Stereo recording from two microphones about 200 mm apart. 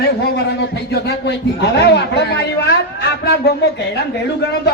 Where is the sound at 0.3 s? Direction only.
55° left (ahead or behind).